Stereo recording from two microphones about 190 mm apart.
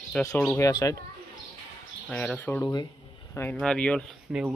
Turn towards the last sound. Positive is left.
turn(degrees=0)  # may be behind; listen again after turning